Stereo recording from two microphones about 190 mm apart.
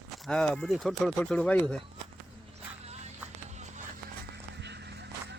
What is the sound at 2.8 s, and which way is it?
Vehicle, 35° right (ahead or behind).